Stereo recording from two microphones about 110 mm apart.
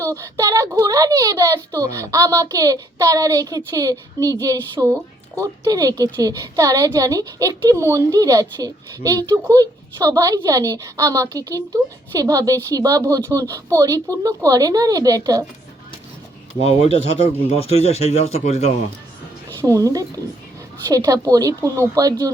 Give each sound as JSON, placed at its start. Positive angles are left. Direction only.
{"t": 0.0, "sound": "a woman's voice", "side_deg": -30}
{"t": 16.6, "sound": "a man's voice", "side_deg": 70}
{"t": 19.6, "sound": "a woman's voice", "side_deg": -30}